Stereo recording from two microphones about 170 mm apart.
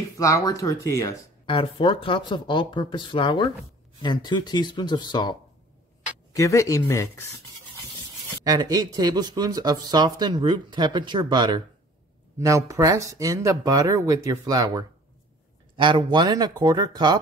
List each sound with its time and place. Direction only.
0.2 s speech: 20° left (ahead or behind)
1.4 s speech: 30° left (ahead or behind)
8.5 s speech: 20° right (ahead or behind)